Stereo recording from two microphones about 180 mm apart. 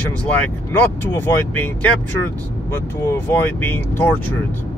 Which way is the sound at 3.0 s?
10° left (ahead or behind).